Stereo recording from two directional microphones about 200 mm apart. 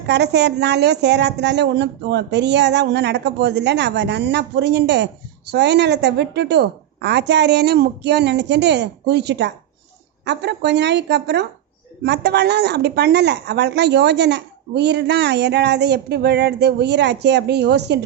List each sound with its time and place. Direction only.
0.1 s a woman's voice: 55° right (ahead or behind)